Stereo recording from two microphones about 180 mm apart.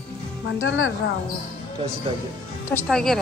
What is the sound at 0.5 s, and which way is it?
Speech, 90° left.